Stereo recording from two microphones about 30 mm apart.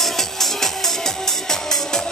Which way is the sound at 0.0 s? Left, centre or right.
Centre.